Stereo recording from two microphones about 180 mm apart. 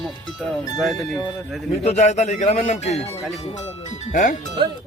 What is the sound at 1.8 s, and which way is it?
Speech, 40° left (ahead or behind).